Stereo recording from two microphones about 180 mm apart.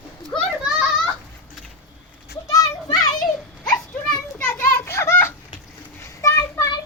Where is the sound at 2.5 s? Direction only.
20° left (ahead or behind).